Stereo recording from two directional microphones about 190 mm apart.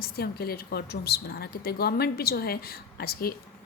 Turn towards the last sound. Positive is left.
turn(degrees=50)  # may be behind; listen again after turning